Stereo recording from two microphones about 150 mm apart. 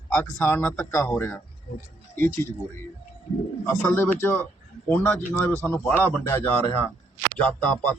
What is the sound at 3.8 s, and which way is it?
A man's voice, 15° left (ahead or behind).